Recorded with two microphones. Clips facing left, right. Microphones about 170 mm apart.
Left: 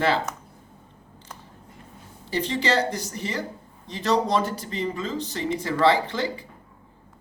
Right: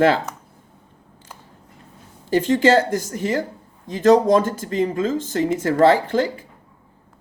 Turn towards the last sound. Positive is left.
turn(degrees=-50)  # may be behind; listen again after turning